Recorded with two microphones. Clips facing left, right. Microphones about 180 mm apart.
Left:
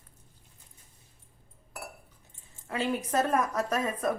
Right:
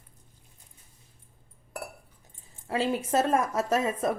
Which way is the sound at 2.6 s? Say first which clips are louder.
Right 3 dB; 30° right (ahead or behind).